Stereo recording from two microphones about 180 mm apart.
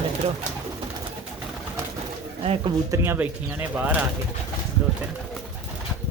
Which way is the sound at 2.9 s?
10° right (ahead or behind).